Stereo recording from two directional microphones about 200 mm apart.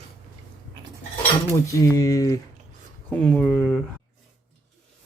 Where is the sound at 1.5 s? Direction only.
15° left (ahead or behind).